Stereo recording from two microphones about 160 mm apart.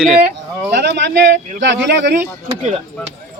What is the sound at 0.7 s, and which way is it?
A man's voice, 90° right.